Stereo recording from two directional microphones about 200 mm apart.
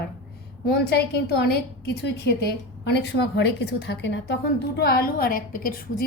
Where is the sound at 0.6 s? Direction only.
55° left (ahead or behind).